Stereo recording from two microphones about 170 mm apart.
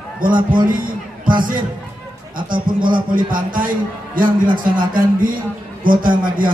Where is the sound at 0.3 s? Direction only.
30° right (ahead or behind).